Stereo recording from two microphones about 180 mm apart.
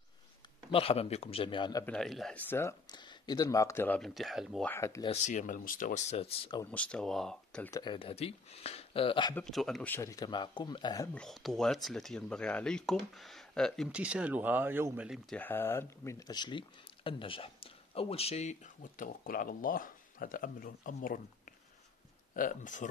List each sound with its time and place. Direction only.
0.7 s speech: 30° left (ahead or behind)
1.9 s speech: centre (ahead or behind)
2.9 s speech: 25° left (ahead or behind); by 4.6 s centre (ahead or behind)
4.6 s speech: 15° left (ahead or behind)
5.0 s speech: 40° left (ahead or behind)
6.6 s speech: 10° left (ahead or behind)
7.7 s speech: 25° left (ahead or behind)
9.3 s speech: 5° left (ahead or behind)
9.9 s speech: 20° left (ahead or behind)
11.1 s speech: centre (ahead or behind)
15.3 s speech: 10° left (ahead or behind); by 22.8 s 45° left (ahead or behind)